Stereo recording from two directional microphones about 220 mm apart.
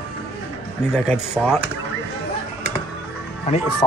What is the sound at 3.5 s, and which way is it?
Speech, 30° left (ahead or behind).